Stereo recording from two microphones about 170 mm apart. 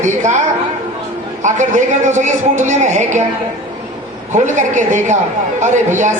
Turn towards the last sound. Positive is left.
turn(degrees=-45)  # may be behind; listen again after turning